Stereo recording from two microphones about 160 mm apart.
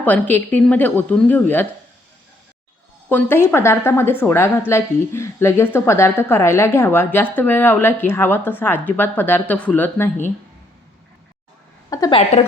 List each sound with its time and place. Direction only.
0.0 s a woman's voice: 10° left (ahead or behind)
3.1 s a woman's voice: 15° left (ahead or behind)
11.9 s a sound: 20° left (ahead or behind)
12.3 s a woman's voice: 45° left (ahead or behind)